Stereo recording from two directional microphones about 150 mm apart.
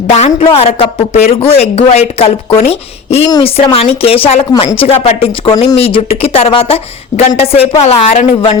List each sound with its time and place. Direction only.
0.1 s speech: 45° left (ahead or behind)